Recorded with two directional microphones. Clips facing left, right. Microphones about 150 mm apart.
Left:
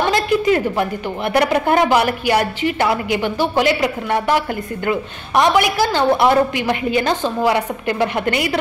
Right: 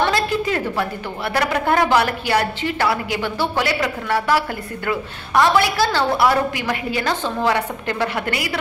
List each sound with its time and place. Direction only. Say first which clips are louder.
0.1 s a woman's voice: left 5 dB; 20° left (ahead or behind)